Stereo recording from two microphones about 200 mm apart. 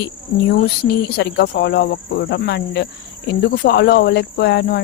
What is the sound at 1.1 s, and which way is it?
Speech, 60° left (ahead or behind).